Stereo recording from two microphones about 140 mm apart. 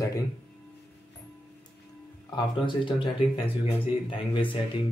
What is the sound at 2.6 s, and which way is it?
Speech, 35° left (ahead or behind).